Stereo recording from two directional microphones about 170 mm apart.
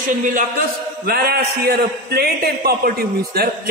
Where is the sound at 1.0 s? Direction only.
65° right (ahead or behind).